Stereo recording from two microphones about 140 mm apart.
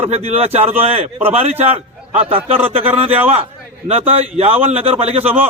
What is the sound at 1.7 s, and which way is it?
Speech, 45° right (ahead or behind).